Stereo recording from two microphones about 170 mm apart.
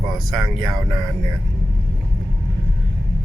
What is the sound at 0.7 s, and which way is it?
Speech, 20° right (ahead or behind).